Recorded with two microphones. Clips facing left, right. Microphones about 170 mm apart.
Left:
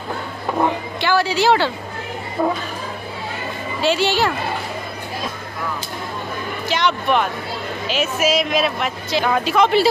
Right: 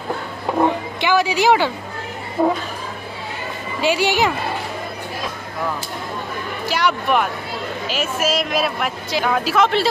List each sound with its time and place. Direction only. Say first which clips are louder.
1.0 s speech: right 1 dB; 15° right (ahead or behind)
3.8 s speech: even; 15° right (ahead or behind)
6.7 s speech: even; 5° right (ahead or behind)